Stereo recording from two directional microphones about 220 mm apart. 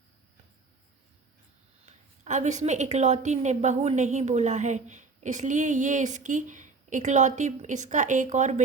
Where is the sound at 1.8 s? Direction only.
30° right (ahead or behind).